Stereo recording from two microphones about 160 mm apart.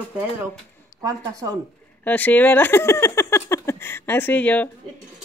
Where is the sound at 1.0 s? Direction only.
20° right (ahead or behind).